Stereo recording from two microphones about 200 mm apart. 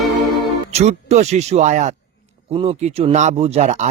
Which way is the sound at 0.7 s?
30° right (ahead or behind).